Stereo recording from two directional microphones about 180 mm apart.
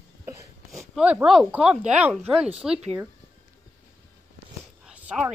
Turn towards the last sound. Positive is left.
turn(degrees=-10)  # may be behind; listen again after turning